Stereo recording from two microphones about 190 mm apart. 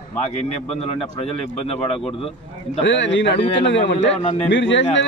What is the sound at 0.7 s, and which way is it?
A man's voice, 30° left (ahead or behind).